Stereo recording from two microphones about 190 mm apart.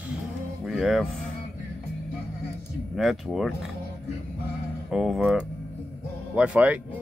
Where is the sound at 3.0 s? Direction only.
Centre (ahead or behind).